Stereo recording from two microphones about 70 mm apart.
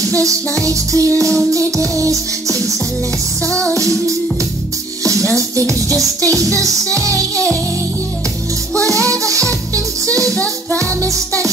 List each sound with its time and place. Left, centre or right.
0.2 s music: right
1.1 s music: centre
2.0 s music: right
3.4 s music: centre
5.3 s music: right
9.2 s music: right
10.3 s music: centre
10.8 s music: right